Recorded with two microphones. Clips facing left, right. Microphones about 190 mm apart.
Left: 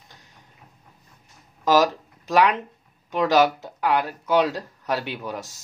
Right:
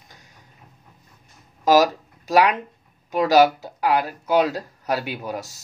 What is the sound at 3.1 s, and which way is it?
Speech, 40° right (ahead or behind).